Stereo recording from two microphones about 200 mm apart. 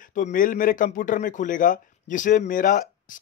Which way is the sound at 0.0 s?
40° left (ahead or behind).